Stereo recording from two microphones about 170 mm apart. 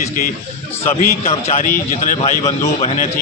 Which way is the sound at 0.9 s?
40° left (ahead or behind).